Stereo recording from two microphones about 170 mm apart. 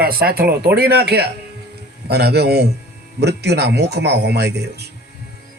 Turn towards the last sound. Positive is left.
turn(degrees=-75)  # may be behind; listen again after turning